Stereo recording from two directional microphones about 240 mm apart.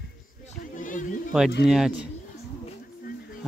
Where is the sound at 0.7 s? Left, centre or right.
Left.